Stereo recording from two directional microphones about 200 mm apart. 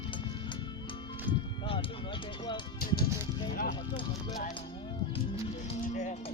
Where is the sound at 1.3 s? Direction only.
25° left (ahead or behind).